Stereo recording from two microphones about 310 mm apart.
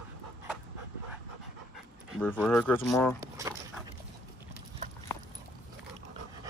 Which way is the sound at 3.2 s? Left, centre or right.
Centre.